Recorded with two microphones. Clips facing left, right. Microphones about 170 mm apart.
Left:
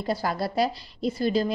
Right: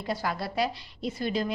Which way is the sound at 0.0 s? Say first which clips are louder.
Left 4 dB; 35° left (ahead or behind).